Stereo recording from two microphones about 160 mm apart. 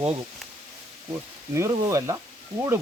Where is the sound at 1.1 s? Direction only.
20° right (ahead or behind).